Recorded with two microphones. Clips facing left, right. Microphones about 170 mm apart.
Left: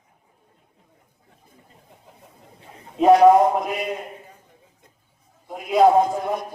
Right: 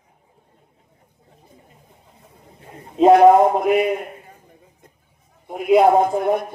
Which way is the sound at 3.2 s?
60° right (ahead or behind).